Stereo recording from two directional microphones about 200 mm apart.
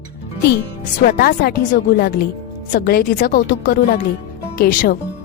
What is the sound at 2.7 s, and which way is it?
Speech, 50° left (ahead or behind).